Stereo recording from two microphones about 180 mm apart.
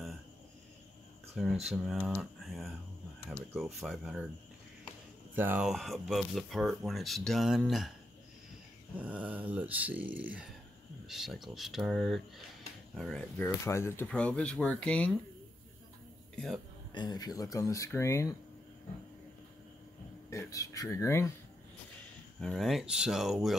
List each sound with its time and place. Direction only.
1.3 s speech: centre (ahead or behind)
5.3 s speech: 10° right (ahead or behind)
8.9 s speech: 10° right (ahead or behind)
16.3 s a man's voice: centre (ahead or behind)
16.9 s speech: 25° left (ahead or behind)
20.2 s speech: 15° left (ahead or behind)
22.4 s speech: centre (ahead or behind)